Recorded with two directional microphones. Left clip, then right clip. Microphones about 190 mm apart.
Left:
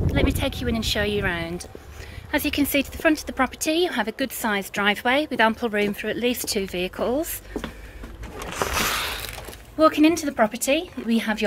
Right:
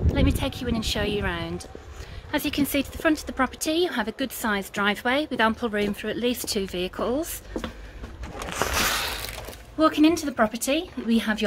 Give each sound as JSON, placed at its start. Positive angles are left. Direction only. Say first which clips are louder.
{"t": 0.0, "sound": "a woman's voice", "louder": "left 2 dB", "side_deg": 5}
{"t": 8.5, "sound": "a sound", "louder": "left 1 dB", "side_deg": -50}
{"t": 9.8, "sound": "a woman's voice", "louder": "left 2 dB", "side_deg": 0}